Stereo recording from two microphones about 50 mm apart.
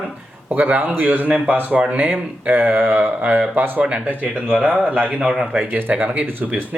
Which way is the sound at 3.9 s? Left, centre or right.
Right.